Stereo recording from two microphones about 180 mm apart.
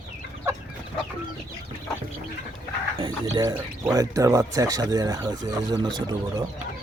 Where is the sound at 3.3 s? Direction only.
15° right (ahead or behind).